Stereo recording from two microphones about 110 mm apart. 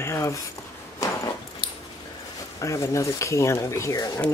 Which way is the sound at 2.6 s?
30° left (ahead or behind).